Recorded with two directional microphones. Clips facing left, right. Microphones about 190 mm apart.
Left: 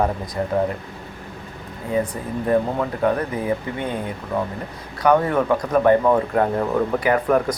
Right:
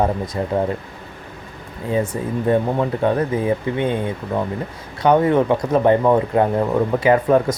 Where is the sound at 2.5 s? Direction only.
25° right (ahead or behind).